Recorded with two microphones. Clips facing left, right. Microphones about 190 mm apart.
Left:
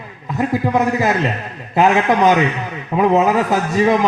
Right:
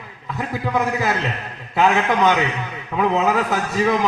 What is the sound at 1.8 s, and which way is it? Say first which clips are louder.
A man's voice: left 4 dB; 45° left (ahead or behind).